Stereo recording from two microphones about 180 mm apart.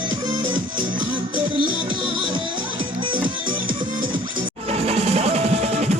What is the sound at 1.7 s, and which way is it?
Music, 25° right (ahead or behind).